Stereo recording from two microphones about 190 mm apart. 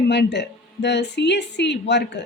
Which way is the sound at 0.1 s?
60° left (ahead or behind).